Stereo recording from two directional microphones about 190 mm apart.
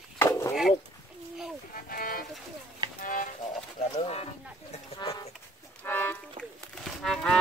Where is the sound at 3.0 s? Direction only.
45° left (ahead or behind).